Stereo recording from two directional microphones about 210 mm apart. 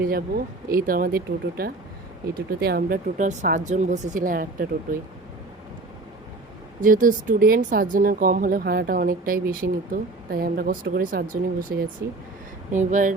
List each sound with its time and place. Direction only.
0.0 s speech: 45° right (ahead or behind)
6.8 s speech: 40° right (ahead or behind)